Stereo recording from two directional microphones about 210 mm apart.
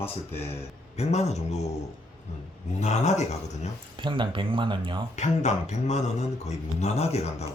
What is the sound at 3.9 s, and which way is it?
Speech, 25° right (ahead or behind).